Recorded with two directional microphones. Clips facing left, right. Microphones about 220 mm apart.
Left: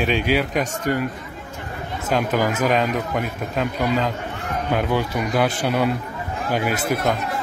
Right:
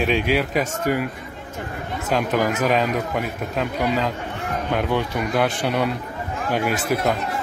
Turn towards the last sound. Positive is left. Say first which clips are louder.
# even
turn(degrees=0)  # may be behind; listen again after turning